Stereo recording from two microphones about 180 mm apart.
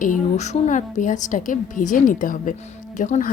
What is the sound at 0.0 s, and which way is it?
A woman's voice, 45° left (ahead or behind).